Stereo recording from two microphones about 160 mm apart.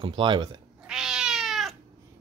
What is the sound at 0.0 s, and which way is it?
Speech, 30° right (ahead or behind).